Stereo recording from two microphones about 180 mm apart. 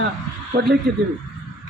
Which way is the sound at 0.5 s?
60° right (ahead or behind).